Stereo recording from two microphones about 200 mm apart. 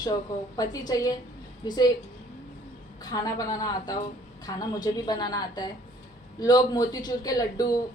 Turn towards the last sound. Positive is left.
turn(degrees=20)  # may be behind; listen again after turning